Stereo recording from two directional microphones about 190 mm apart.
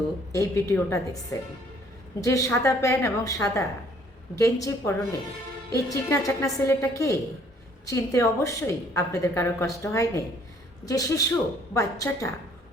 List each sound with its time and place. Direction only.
0.3 s speech: 15° left (ahead or behind)